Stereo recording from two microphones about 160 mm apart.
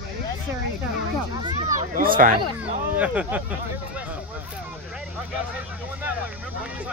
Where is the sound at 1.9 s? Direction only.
60° right (ahead or behind).